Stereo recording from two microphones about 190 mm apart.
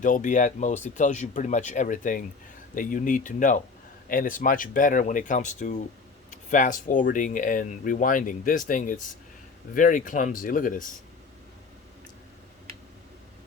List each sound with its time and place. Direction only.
0.0 s speech: 45° left (ahead or behind)